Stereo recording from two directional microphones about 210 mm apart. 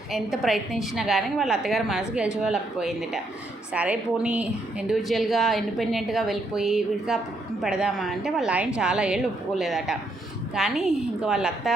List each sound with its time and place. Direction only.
0.1 s a woman's voice: centre (ahead or behind)